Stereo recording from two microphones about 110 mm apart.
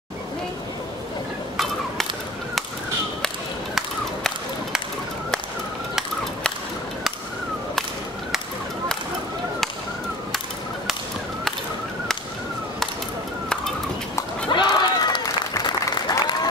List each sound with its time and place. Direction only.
14.5 s applause: 40° left (ahead or behind)